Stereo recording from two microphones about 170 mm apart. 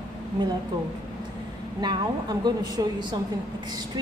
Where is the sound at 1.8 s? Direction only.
25° right (ahead or behind).